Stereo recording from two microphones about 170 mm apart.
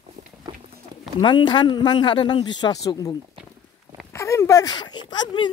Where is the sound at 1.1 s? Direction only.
25° left (ahead or behind).